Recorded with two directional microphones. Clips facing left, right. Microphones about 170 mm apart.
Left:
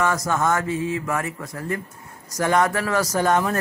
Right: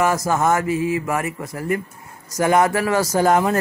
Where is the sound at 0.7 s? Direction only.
75° right (ahead or behind).